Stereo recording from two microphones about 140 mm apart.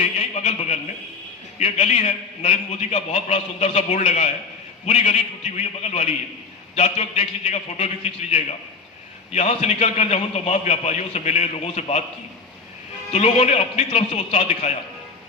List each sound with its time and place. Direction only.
0.2 s a sound: 55° left (ahead or behind)
1.5 s a man's voice: 55° left (ahead or behind)
13.1 s a man's voice: 50° left (ahead or behind)